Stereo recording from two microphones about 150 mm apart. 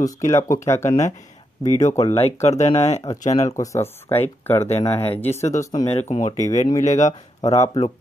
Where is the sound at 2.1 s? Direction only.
45° left (ahead or behind).